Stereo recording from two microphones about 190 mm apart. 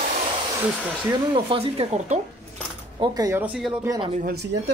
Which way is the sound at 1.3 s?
30° right (ahead or behind).